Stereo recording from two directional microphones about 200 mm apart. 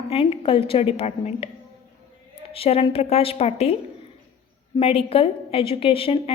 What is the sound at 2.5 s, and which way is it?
A woman's voice, 30° left (ahead or behind).